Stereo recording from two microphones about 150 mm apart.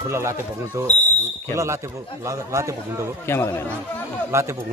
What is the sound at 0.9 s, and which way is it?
Fire alarm, 50° left (ahead or behind).